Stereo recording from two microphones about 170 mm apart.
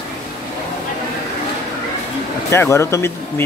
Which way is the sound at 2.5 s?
15° left (ahead or behind).